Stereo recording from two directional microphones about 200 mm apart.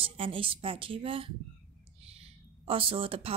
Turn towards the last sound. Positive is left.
turn(degrees=-30)  # may be behind; listen again after turning